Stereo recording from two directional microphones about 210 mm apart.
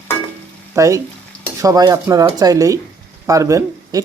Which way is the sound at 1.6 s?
15° right (ahead or behind).